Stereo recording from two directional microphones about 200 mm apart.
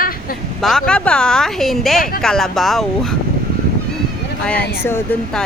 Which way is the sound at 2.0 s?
45° left (ahead or behind).